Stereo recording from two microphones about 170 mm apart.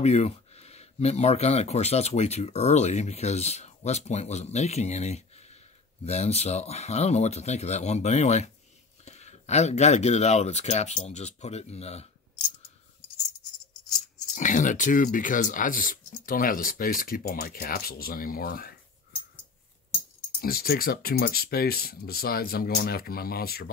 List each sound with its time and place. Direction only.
0.0 s speech: 40° left (ahead or behind)
14.3 s speech: 50° left (ahead or behind)
20.3 s speech: 60° left (ahead or behind)